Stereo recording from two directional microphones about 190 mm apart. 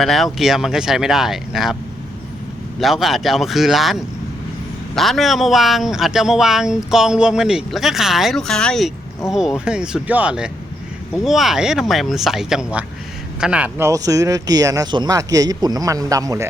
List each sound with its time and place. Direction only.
0.0 s speech: centre (ahead or behind)
2.8 s speech: centre (ahead or behind); by 16.5 s 15° right (ahead or behind)